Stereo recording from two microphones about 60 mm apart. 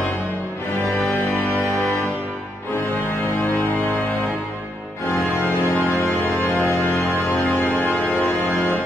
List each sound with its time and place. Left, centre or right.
5.7 s music: left